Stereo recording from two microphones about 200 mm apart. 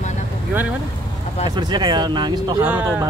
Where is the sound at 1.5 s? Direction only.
20° right (ahead or behind).